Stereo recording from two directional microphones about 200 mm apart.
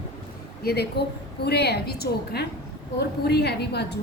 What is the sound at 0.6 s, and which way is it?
A woman's voice, 50° left (ahead or behind).